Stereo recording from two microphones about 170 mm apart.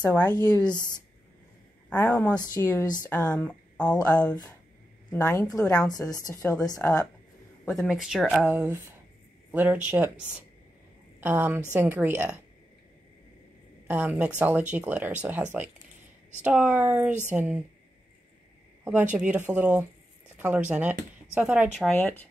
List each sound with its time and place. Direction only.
0.0 s a woman's voice: 10° left (ahead or behind)
0.3 s a woman's voice: 20° left (ahead or behind)
1.9 s a woman's voice: 5° left (ahead or behind)
2.3 s a woman's voice: 25° left (ahead or behind)
3.3 s speech: 5° left (ahead or behind)
5.2 s a woman's voice: 20° left (ahead or behind)
7.6 s speech: centre (ahead or behind)
11.1 s a woman's voice: 10° right (ahead or behind)
13.8 s speech: 10° right (ahead or behind)
18.9 s speech: 10° right (ahead or behind)
21.7 s speech: 5° left (ahead or behind)